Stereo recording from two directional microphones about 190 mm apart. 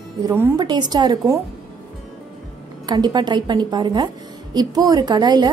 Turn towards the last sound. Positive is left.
turn(degrees=-20)  # may be behind; listen again after turning